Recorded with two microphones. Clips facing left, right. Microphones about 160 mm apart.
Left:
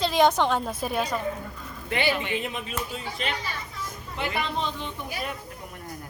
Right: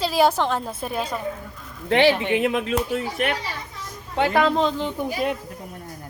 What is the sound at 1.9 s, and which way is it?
Speech, 80° right.